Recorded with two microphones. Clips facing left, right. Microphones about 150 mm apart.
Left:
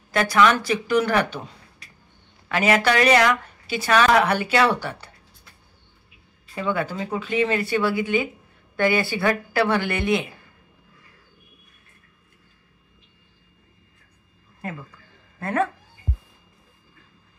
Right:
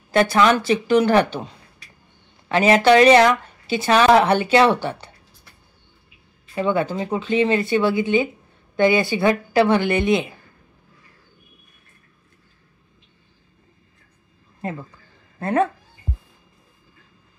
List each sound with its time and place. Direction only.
0.1 s speech: 30° right (ahead or behind)
2.4 s speech: 30° right (ahead or behind)
6.5 s speech: 25° right (ahead or behind)
15.3 s speech: 25° right (ahead or behind)